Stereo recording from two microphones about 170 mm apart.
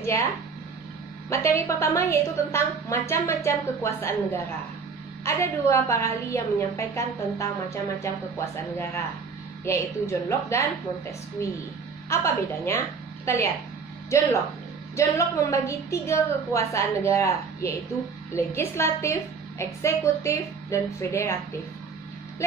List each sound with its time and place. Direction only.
1.3 s a woman's voice: 15° left (ahead or behind)
15.0 s a woman's voice: 15° left (ahead or behind)